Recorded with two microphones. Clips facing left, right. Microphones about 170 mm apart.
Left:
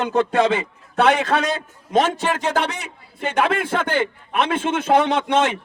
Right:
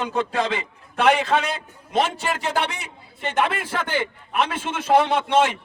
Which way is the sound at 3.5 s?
50° left (ahead or behind).